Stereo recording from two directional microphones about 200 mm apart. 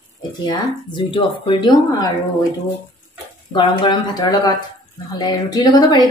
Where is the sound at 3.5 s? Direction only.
25° left (ahead or behind).